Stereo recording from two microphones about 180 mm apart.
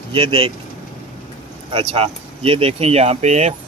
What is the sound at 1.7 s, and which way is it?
Speech, 30° right (ahead or behind).